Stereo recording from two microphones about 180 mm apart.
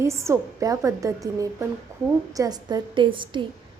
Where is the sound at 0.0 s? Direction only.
15° right (ahead or behind).